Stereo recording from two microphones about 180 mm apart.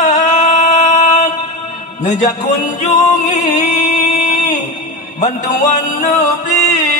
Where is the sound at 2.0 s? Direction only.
40° left (ahead or behind).